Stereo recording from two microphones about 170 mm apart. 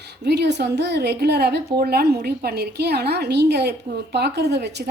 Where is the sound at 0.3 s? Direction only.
80° right.